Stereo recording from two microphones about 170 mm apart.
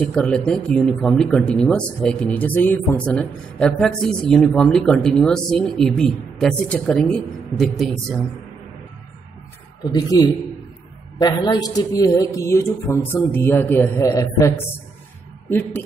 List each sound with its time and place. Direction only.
0.0 s speech: 5° left (ahead or behind)
9.9 s a man's voice: 20° left (ahead or behind)